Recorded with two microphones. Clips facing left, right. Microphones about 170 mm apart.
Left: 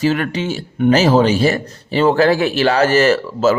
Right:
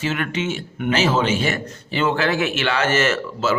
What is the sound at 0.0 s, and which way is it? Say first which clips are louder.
A man's voice: left 6 dB; 35° left (ahead or behind).